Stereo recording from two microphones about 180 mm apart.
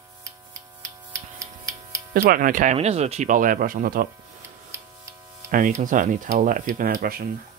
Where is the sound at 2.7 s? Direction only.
35° right (ahead or behind); by 4.0 s 50° right (ahead or behind).